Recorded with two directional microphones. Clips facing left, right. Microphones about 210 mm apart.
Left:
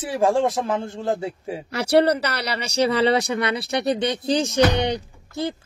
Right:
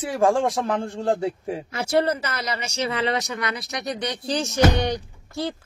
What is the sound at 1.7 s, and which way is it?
Speech, 70° left (ahead or behind).